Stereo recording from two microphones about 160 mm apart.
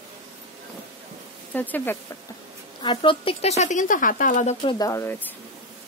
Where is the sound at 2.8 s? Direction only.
30° left (ahead or behind); by 4.6 s 50° left (ahead or behind).